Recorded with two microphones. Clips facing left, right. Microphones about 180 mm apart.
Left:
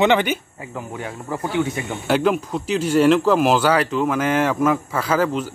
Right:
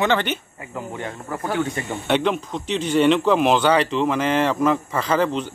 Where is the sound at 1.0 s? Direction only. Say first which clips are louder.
Left 4 dB; 10° left (ahead or behind).